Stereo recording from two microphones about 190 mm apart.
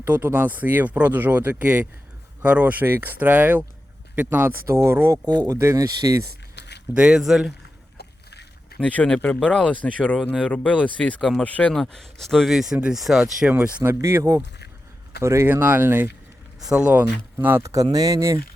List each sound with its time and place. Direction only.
0.0 s speech: 10° right (ahead or behind)
6.6 s a sound: 60° left (ahead or behind)
6.9 s speech: 5° right (ahead or behind)
7.9 s rowboat: 60° left (ahead or behind)
8.8 s speech: 5° left (ahead or behind); by 18.3 s 15° right (ahead or behind)